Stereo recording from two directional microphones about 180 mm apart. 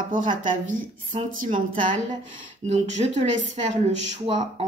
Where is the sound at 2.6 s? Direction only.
40° right (ahead or behind).